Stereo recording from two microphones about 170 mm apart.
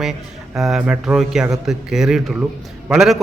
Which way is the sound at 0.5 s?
Centre (ahead or behind).